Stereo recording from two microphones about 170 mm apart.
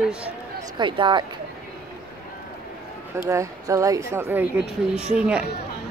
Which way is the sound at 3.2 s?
20° right (ahead or behind).